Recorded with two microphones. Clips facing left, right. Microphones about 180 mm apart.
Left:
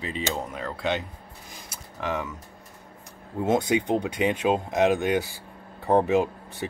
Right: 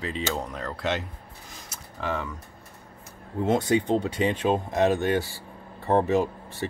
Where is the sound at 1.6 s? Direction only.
15° left (ahead or behind).